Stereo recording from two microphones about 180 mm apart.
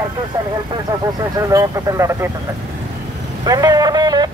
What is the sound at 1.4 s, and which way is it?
Speech, 20° right (ahead or behind).